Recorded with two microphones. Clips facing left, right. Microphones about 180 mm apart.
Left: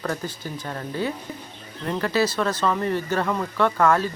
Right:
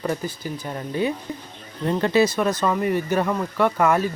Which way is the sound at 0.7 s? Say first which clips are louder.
Right 3 dB; 20° right (ahead or behind).